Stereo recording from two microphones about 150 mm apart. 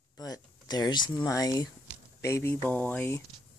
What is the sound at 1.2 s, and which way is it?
Speech, 25° left (ahead or behind).